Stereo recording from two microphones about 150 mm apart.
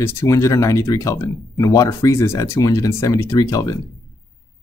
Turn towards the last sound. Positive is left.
turn(degrees=20)  # may be behind; listen again after turning